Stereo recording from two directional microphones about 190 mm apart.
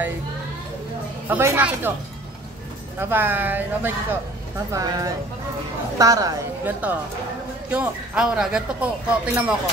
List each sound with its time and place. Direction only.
1.3 s speech: 10° right (ahead or behind)
3.0 s speech: 10° right (ahead or behind)